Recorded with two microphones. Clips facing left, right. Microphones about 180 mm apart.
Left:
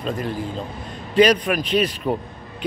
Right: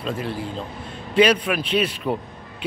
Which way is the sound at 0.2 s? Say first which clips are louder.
Left 2 dB; 45° left (ahead or behind).